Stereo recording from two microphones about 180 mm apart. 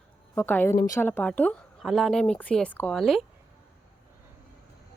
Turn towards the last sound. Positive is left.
turn(degrees=0)  # may be behind; listen again after turning